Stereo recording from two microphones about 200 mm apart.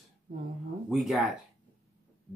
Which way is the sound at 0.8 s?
Centre (ahead or behind).